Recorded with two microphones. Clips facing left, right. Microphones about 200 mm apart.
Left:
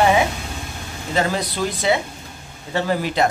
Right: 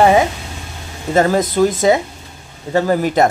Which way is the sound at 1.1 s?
45° right (ahead or behind).